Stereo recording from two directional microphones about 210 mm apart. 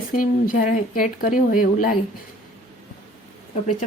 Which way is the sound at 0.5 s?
40° left (ahead or behind).